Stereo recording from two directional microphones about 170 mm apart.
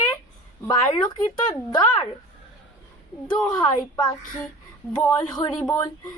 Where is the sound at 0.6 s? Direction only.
25° left (ahead or behind).